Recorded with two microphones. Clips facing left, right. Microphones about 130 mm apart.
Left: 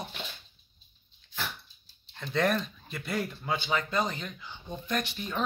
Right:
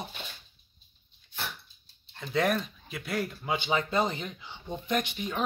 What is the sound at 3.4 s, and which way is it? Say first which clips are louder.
Speech: right 3 dB; 20° right (ahead or behind).